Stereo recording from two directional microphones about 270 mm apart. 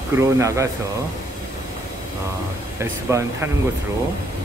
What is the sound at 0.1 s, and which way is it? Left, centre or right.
Speech, centre.